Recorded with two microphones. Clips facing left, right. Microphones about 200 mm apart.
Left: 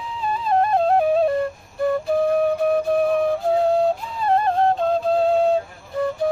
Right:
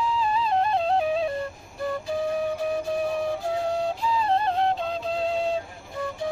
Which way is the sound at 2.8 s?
60° left (ahead or behind).